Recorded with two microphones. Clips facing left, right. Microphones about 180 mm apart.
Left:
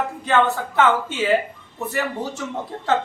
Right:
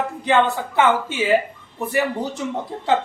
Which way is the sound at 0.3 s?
15° right (ahead or behind).